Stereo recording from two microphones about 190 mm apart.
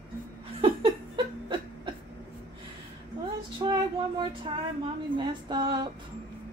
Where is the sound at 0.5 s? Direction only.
25° right (ahead or behind).